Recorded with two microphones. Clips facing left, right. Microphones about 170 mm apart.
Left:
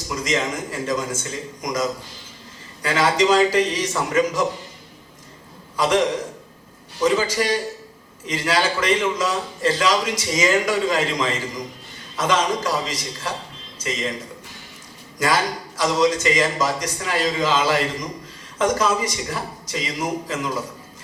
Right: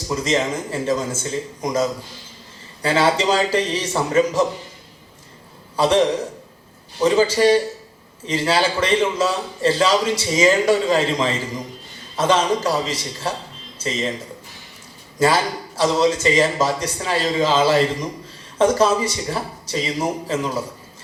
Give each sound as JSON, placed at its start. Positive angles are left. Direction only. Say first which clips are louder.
{"t": 0.1, "sound": "a man's voice", "louder": "right 3 dB", "side_deg": -30}
{"t": 5.7, "sound": "a man's voice", "louder": "right 3 dB", "side_deg": -30}
{"t": 15.2, "sound": "a man's voice", "louder": "right 3 dB", "side_deg": -30}